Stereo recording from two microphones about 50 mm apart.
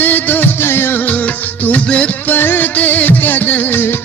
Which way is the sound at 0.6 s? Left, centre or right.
Left.